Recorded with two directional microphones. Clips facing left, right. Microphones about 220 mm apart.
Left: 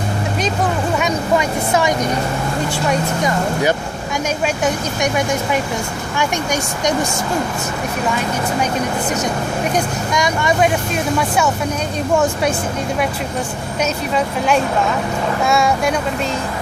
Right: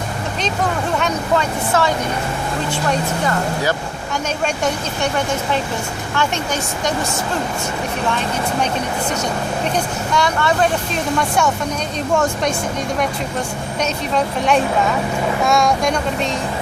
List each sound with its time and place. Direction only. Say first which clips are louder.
0.9 s speech: left 1 dB; 10° left (ahead or behind)
2.9 s speech: left 2 dB; 15° left (ahead or behind)
6.1 s speech: left 1 dB; 15° left (ahead or behind)
9.7 s speech: left 1 dB; 15° left (ahead or behind)
14.1 s speech: right 1 dB; centre (ahead or behind)